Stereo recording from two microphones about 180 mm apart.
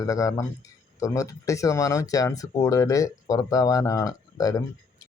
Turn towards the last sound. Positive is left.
turn(degrees=20)  # may be behind; listen again after turning